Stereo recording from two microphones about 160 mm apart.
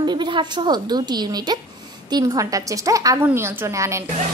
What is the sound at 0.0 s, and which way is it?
A woman's voice, 30° right (ahead or behind).